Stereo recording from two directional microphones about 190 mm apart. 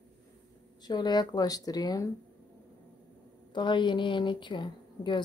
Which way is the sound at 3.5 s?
25° left (ahead or behind).